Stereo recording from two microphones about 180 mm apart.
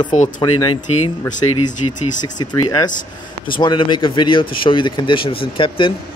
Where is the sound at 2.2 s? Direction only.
25° left (ahead or behind).